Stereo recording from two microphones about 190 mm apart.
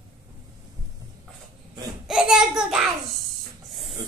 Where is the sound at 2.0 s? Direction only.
5° right (ahead or behind).